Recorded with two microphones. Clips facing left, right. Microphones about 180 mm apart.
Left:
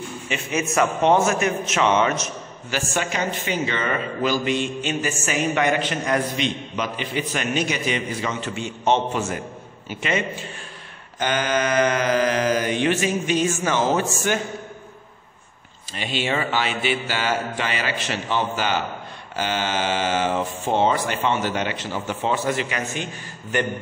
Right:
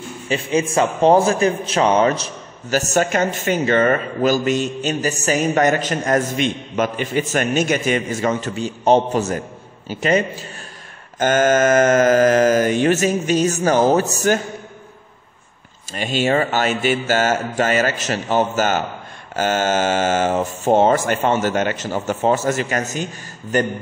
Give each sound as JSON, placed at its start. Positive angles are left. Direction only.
{"t": 0.3, "sound": "a man's voice", "side_deg": -30}
{"t": 15.9, "sound": "a man's voice", "side_deg": -45}